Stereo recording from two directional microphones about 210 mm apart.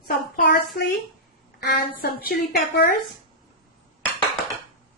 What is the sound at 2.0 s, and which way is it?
Speech, 45° left (ahead or behind).